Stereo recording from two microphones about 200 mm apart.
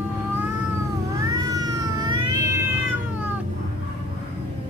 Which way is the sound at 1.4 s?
20° right (ahead or behind).